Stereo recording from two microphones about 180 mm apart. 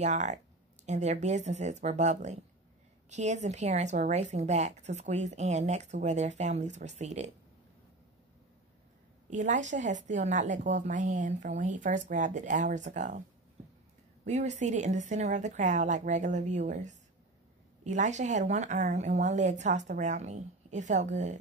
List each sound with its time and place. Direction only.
0.0 s a woman's voice: 40° right (ahead or behind)
9.3 s a woman's voice: 45° right (ahead or behind)
14.2 s a woman's voice: 40° right (ahead or behind)